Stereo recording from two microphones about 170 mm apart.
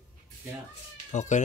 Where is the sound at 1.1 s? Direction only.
45° left (ahead or behind).